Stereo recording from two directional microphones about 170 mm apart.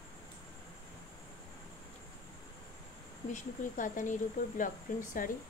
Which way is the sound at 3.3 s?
50° left (ahead or behind).